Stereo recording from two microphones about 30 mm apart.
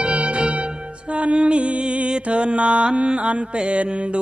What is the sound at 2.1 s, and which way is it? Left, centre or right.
Mantra, right.